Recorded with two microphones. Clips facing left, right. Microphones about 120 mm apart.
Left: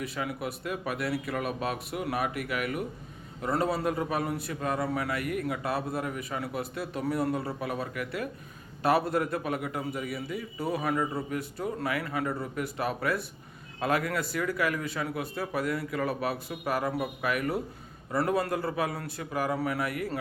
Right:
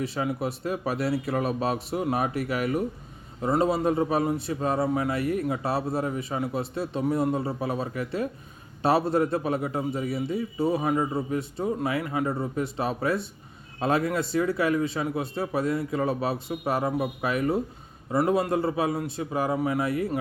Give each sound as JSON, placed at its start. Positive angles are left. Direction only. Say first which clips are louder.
{"t": 0.0, "sound": "speech", "louder": "right 5 dB", "side_deg": -30}
{"t": 3.4, "sound": "a man's voice", "louder": "right 5 dB", "side_deg": -20}